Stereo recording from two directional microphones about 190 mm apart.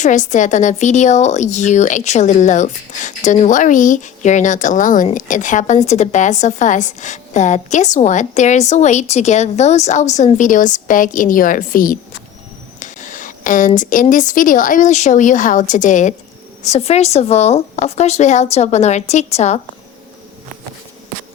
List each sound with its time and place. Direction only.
0.0 s a woman's voice: 40° left (ahead or behind)